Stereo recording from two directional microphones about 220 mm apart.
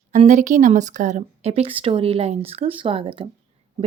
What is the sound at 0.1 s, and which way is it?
Speech, 35° right (ahead or behind).